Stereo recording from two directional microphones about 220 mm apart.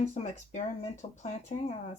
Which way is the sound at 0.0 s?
30° left (ahead or behind).